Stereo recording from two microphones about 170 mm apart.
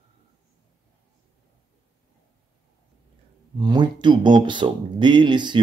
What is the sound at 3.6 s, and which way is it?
Speech, 25° right (ahead or behind).